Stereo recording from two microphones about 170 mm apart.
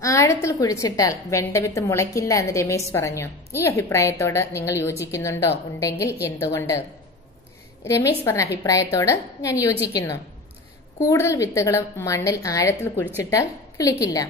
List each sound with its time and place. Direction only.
0.0 s a woman's voice: 20° left (ahead or behind)
7.8 s a woman's voice: 15° left (ahead or behind)
11.1 s a woman's voice: 20° left (ahead or behind)